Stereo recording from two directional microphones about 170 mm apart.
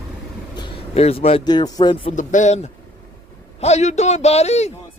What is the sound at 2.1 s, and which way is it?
A man's voice, 45° left (ahead or behind).